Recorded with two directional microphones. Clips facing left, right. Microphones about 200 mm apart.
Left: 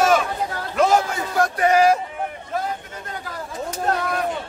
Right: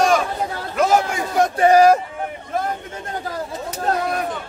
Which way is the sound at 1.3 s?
25° right (ahead or behind).